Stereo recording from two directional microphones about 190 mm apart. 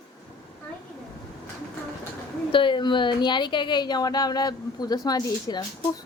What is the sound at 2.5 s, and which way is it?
A woman's voice, 25° left (ahead or behind).